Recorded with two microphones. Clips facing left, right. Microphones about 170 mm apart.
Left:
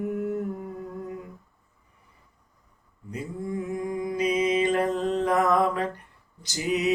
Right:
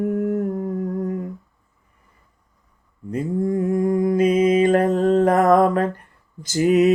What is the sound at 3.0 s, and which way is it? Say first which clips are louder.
Mantra: right 11 dB; 50° right (ahead or behind).